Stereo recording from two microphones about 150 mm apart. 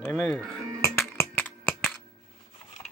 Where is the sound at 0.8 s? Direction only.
15° left (ahead or behind).